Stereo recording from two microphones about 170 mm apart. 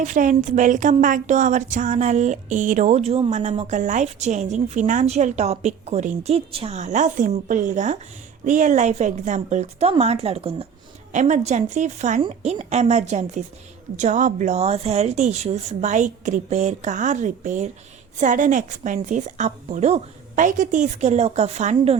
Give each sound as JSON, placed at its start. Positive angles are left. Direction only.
{"t": 0.0, "sound": "a woman's voice", "side_deg": -45}